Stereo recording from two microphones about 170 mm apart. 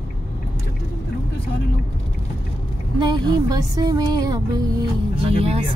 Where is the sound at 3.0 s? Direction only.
25° right (ahead or behind).